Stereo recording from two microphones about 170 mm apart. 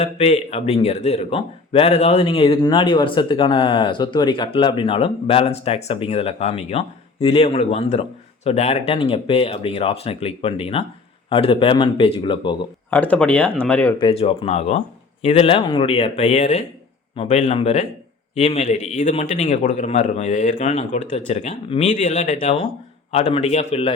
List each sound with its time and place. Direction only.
0.0 s a man's voice: 40° left (ahead or behind)
12.9 s speech: 10° left (ahead or behind)
14.0 s a man's voice: 35° left (ahead or behind)